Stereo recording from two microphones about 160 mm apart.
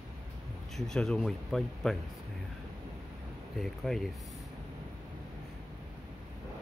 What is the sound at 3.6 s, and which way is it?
Speech, centre (ahead or behind).